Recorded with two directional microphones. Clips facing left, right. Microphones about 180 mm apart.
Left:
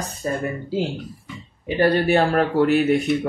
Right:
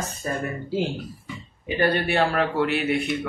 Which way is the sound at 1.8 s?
40° left (ahead or behind).